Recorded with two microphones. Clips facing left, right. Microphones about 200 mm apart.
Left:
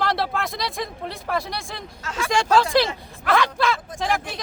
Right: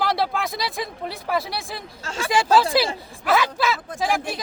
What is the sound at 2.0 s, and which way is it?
Speech, 30° right (ahead or behind).